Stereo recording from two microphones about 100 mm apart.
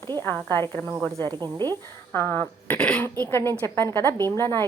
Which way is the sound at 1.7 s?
25° left (ahead or behind).